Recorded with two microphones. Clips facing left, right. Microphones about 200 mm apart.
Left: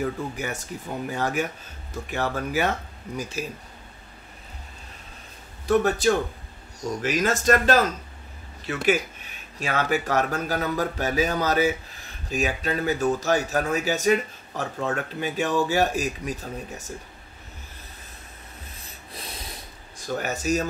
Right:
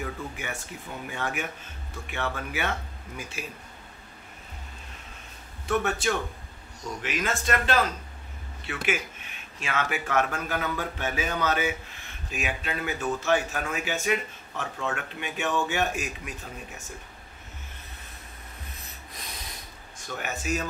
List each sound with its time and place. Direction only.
0.0 s a man's voice: 40° left (ahead or behind)
5.7 s a man's voice: 35° left (ahead or behind)
20.1 s a man's voice: 40° left (ahead or behind)